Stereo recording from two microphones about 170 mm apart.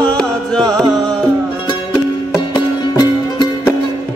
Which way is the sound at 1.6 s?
25° left (ahead or behind).